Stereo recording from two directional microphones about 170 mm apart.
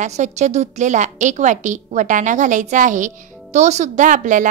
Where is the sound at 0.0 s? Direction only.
45° right (ahead or behind).